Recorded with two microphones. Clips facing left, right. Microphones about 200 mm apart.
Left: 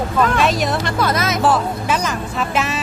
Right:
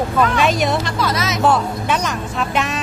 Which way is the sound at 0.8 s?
55° left (ahead or behind).